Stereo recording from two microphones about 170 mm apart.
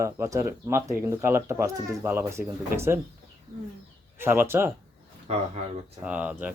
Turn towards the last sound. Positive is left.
turn(degrees=-10)  # may be behind; listen again after turning